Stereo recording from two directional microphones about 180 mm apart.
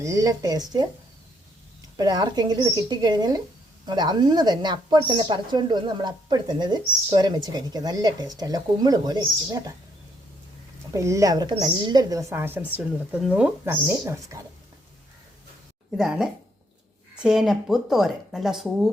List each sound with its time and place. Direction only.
0.0 s speech: 15° right (ahead or behind)
2.0 s speech: 20° right (ahead or behind)
10.9 s a woman's voice: 15° right (ahead or behind)
16.0 s speech: 5° right (ahead or behind)